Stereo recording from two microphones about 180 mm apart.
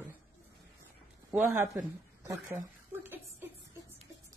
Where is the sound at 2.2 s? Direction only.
10° right (ahead or behind).